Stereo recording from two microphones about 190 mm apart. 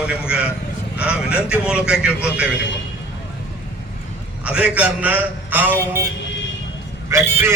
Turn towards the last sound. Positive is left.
turn(degrees=-15)  # may be behind; listen again after turning